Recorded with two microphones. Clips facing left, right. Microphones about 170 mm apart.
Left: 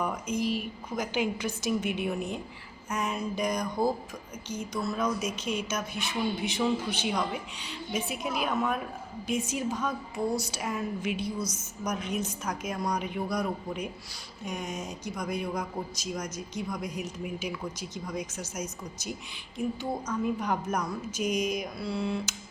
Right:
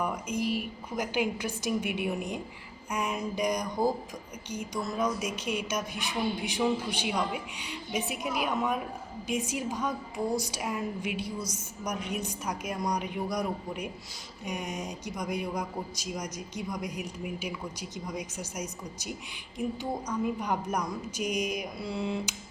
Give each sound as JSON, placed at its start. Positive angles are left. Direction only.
{"t": 0.0, "sound": "speech", "side_deg": -10}